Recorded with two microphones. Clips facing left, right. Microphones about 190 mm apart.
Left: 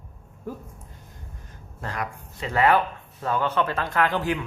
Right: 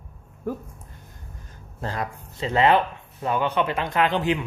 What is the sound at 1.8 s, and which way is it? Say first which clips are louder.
Speech: right 2 dB; 30° right (ahead or behind).